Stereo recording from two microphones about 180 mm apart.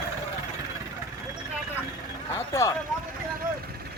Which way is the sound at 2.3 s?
15° left (ahead or behind).